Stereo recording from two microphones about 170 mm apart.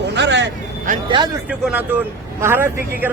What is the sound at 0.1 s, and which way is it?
Vehicle, 90° right.